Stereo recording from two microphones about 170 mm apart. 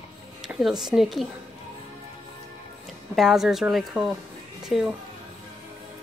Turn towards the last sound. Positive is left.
turn(degrees=-5)  # may be behind; listen again after turning